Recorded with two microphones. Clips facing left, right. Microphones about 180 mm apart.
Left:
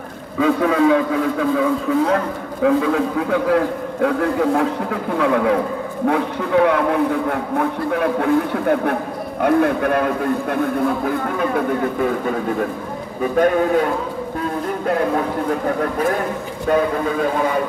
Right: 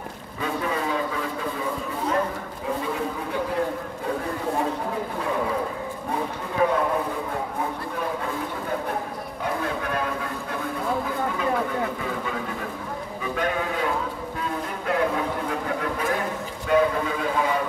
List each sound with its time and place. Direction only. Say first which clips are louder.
0.4 s a man's voice: left 11 dB; 90° left
2.6 s a man's voice: left 12 dB; 90° left; by 13.8 s 45° left (ahead or behind)
16.7 s speech: left 3 dB; 45° left (ahead or behind)